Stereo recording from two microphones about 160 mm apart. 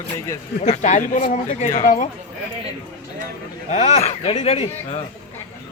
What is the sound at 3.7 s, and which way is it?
Speech, 40° left (ahead or behind).